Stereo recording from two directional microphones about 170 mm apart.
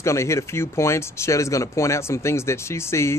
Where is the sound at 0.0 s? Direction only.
15° left (ahead or behind).